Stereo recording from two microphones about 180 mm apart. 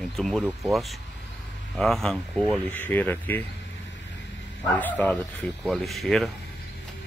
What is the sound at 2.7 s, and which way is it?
Speech, 10° left (ahead or behind).